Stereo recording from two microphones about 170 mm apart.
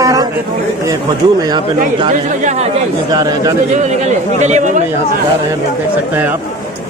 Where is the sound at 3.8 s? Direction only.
45° right (ahead or behind).